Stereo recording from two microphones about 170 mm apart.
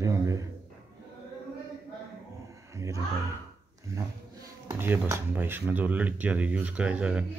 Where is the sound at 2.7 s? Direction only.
20° right (ahead or behind).